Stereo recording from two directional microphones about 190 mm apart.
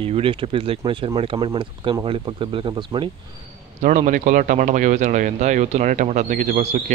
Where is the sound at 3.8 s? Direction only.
40° right (ahead or behind).